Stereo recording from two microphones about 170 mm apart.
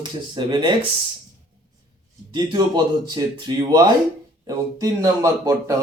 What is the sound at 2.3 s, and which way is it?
Speech, 25° right (ahead or behind).